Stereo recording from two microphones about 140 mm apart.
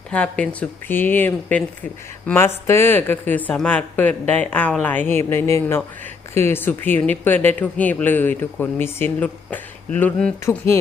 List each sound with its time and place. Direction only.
0.1 s speech: 10° left (ahead or behind)
10.4 s speech: 20° left (ahead or behind)